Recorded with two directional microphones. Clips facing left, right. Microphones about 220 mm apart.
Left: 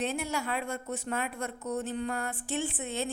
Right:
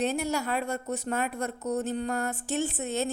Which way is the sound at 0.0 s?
40° right (ahead or behind).